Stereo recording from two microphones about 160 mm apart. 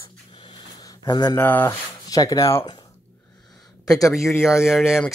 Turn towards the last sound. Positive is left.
turn(degrees=-5)  # may be behind; listen again after turning